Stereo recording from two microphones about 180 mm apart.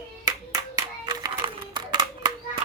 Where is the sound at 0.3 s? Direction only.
20° right (ahead or behind).